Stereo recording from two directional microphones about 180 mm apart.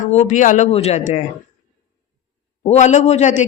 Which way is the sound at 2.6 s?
40° left (ahead or behind).